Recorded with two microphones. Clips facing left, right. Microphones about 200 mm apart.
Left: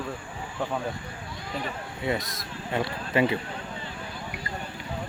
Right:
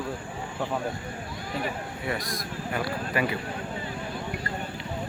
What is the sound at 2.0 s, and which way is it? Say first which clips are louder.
Speech: left 3 dB; 25° left (ahead or behind).